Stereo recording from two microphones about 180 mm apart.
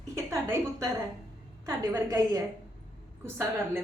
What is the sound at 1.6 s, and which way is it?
Speech, 15° right (ahead or behind).